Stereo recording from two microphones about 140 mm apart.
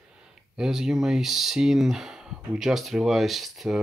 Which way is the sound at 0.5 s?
5° right (ahead or behind).